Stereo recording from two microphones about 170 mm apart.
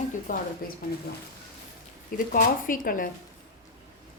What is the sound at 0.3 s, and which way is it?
Speech, 50° left (ahead or behind).